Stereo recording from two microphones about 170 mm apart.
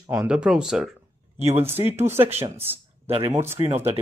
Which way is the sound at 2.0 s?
15° right (ahead or behind).